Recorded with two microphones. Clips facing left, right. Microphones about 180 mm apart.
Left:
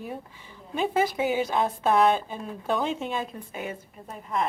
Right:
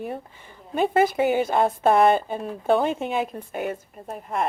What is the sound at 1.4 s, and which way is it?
A woman's voice, 55° right (ahead or behind).